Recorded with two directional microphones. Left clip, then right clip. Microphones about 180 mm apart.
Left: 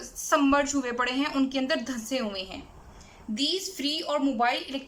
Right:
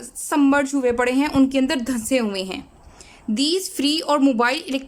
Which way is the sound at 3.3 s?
65° right (ahead or behind).